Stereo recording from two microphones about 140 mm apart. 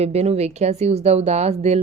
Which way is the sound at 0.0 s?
50° right (ahead or behind).